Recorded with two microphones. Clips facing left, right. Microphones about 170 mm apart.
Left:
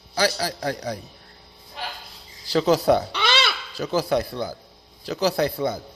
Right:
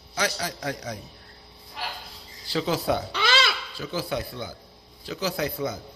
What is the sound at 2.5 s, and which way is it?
A man's voice, 40° left (ahead or behind).